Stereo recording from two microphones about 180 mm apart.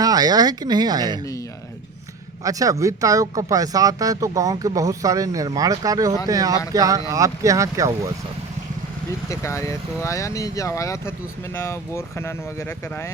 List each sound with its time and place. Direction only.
0.0 s speech: 20° right (ahead or behind)
2.4 s speech: 20° right (ahead or behind)
9.3 s speech: 15° left (ahead or behind)